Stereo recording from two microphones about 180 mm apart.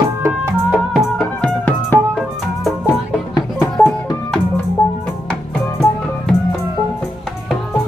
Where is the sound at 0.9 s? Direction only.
10° left (ahead or behind).